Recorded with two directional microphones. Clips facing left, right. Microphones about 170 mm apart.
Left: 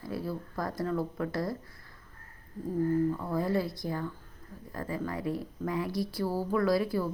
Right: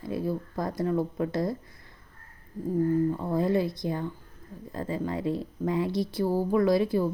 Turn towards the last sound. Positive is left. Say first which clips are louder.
# right 4 dB
turn(degrees=-20)  # may be behind; listen again after turning